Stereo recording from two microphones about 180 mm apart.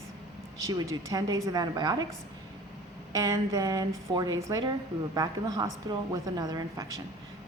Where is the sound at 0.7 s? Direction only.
20° right (ahead or behind).